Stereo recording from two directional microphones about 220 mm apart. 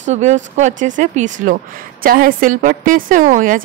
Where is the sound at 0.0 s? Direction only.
30° right (ahead or behind).